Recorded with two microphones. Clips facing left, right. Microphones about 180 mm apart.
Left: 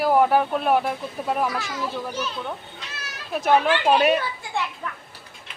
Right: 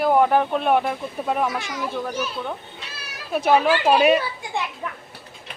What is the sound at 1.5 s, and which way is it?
Speech, 20° right (ahead or behind).